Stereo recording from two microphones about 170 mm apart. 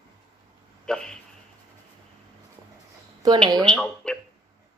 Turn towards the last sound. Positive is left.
turn(degrees=5)  # may be behind; listen again after turning